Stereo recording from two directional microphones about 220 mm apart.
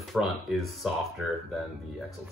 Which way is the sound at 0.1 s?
Centre (ahead or behind).